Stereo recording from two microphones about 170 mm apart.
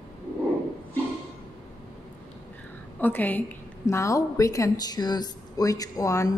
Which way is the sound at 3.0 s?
10° left (ahead or behind).